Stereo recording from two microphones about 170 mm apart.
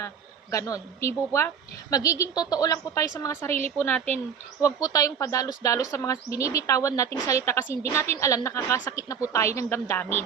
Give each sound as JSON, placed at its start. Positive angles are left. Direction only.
{"t": 0.5, "sound": "a woman's voice", "side_deg": 20}
{"t": 4.6, "sound": "a woman's voice", "side_deg": 20}